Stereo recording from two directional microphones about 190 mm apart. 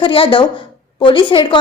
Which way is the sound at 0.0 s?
25° left (ahead or behind).